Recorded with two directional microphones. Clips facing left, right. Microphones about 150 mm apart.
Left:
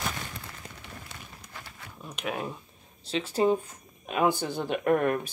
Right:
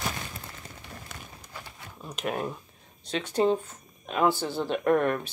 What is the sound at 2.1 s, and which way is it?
Speech, centre (ahead or behind).